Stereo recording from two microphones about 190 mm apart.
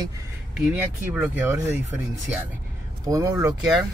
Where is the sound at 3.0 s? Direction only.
20° right (ahead or behind).